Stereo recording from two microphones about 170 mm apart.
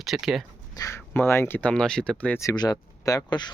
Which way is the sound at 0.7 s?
20° left (ahead or behind).